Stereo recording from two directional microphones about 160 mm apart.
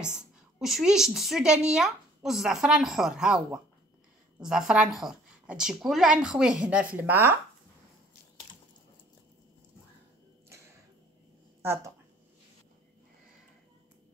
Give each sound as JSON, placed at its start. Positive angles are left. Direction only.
{"t": 0.6, "sound": "a woman's voice", "side_deg": -5}
{"t": 11.6, "sound": "speech", "side_deg": -15}